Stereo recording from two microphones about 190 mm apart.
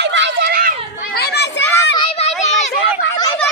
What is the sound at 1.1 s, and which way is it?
Children playing, 60° left (ahead or behind).